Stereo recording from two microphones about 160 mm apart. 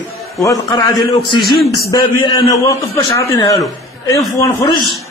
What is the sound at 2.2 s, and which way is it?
A man's voice, 25° left (ahead or behind).